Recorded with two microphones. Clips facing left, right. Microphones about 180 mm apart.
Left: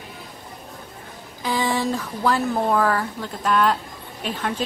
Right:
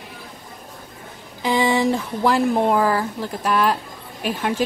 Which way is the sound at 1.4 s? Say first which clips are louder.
Right 4 dB; 15° right (ahead or behind).